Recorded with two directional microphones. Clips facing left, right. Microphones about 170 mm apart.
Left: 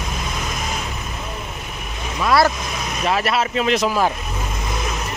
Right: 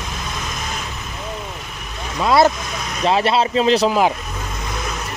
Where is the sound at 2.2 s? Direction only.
20° right (ahead or behind).